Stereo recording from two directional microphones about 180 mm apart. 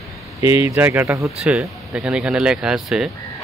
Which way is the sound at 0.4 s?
15° right (ahead or behind).